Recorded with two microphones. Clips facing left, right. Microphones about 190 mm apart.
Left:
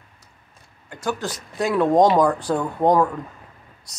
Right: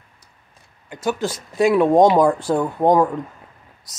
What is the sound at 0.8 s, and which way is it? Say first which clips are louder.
Speech: right 4 dB; 15° right (ahead or behind).